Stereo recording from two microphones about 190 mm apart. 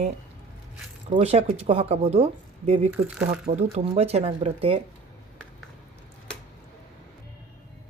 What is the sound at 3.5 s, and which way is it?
A woman's voice, 35° right (ahead or behind).